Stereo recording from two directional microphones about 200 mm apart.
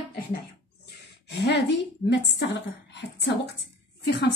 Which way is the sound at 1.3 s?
60° left (ahead or behind).